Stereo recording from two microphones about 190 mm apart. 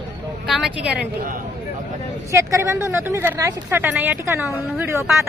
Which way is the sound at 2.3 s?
15° right (ahead or behind).